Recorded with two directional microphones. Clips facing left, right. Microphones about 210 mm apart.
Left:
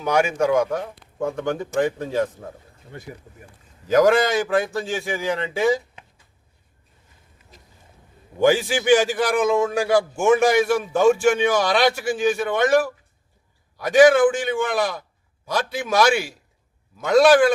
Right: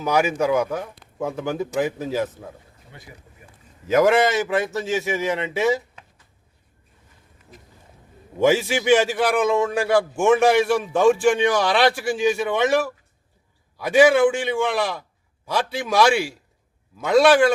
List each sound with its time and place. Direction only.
0.0 s a man's voice: 5° right (ahead or behind)
2.9 s speech: 45° left (ahead or behind)
3.8 s a man's voice: centre (ahead or behind)
8.4 s a man's voice: centre (ahead or behind)
13.7 s a man's voice: 5° right (ahead or behind)